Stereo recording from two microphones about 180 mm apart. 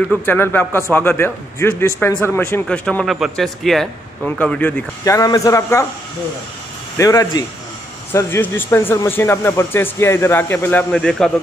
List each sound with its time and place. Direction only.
0.2 s speech: 10° left (ahead or behind)
7.0 s speech: 20° left (ahead or behind)